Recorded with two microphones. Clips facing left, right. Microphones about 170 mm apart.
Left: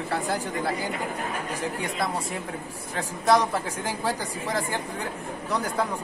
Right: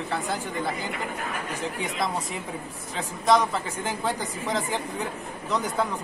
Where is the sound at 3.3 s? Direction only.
10° left (ahead or behind).